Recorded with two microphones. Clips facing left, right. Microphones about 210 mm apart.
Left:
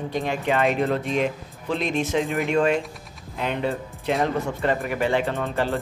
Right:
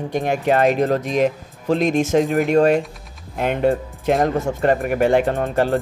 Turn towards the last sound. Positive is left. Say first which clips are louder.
# right 6 dB
turn(degrees=-45)  # may be behind; listen again after turning